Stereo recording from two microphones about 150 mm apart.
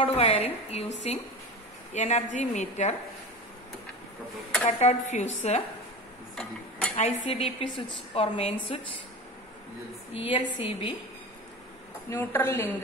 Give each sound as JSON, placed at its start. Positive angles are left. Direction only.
{"t": 0.0, "sound": "a woman's voice", "side_deg": 40}
{"t": 4.6, "sound": "a woman's voice", "side_deg": 50}
{"t": 6.3, "sound": "a sound", "side_deg": 5}
{"t": 7.0, "sound": "a woman's voice", "side_deg": 45}
{"t": 10.1, "sound": "a woman's voice", "side_deg": 35}
{"t": 12.1, "sound": "a woman's voice", "side_deg": 15}